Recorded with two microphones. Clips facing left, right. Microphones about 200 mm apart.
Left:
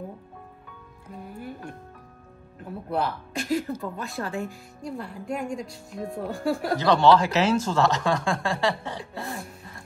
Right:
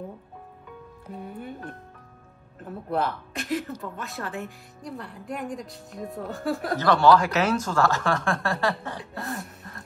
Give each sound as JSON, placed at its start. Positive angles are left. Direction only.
{"t": 1.1, "sound": "music", "side_deg": 0}
{"t": 2.6, "sound": "speech", "side_deg": 0}
{"t": 6.8, "sound": "speech", "side_deg": 20}
{"t": 9.4, "sound": "a sound", "side_deg": 10}